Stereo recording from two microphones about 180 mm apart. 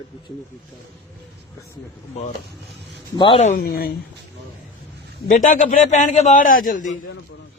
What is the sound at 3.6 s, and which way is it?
Speech, 55° left (ahead or behind).